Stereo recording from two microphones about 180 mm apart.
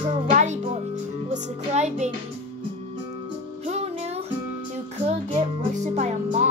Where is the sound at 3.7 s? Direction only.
35° right (ahead or behind).